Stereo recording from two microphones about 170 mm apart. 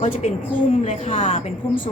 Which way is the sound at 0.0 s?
45° left (ahead or behind).